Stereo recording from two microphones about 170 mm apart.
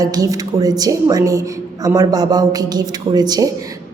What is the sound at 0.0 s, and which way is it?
A woman's voice, 20° right (ahead or behind).